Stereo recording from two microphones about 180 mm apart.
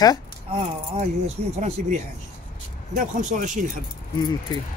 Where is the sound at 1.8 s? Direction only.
45° right (ahead or behind).